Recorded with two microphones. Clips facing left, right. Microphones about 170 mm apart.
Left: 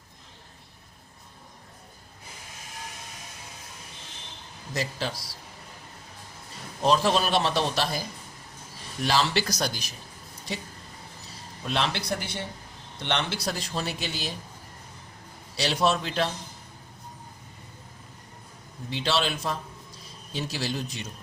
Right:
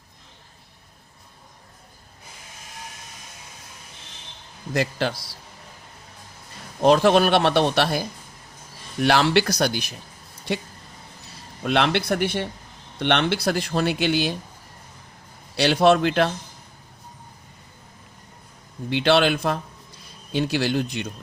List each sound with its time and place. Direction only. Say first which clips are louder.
4.7 s speech: right 7 dB; 65° right (ahead or behind)
6.8 s speech: right 7 dB; 60° right (ahead or behind)
11.6 s speech: right 8 dB; 65° right (ahead or behind)
15.5 s speech: right 8 dB; 65° right (ahead or behind)
18.9 s speech: right 9 dB; 65° right (ahead or behind)